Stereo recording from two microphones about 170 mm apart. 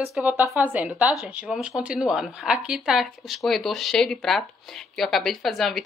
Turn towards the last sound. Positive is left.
turn(degrees=0)  # may be behind; listen again after turning